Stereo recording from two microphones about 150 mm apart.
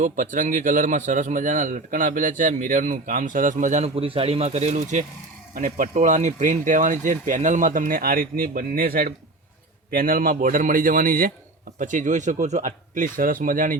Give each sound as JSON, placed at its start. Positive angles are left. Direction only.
{"t": 0.0, "sound": "a man's voice", "side_deg": -60}
{"t": 5.5, "sound": "a man's voice", "side_deg": -65}